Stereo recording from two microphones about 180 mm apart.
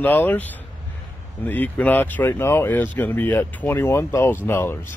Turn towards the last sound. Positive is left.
turn(degrees=15)  # may be behind; listen again after turning